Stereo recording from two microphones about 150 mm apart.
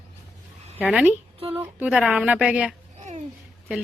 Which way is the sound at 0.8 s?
10° right (ahead or behind).